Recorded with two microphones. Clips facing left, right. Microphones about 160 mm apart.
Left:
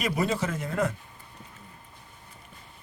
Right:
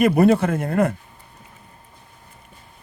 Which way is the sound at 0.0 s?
60° right (ahead or behind).